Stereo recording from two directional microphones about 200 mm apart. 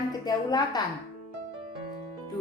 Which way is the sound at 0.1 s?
20° left (ahead or behind).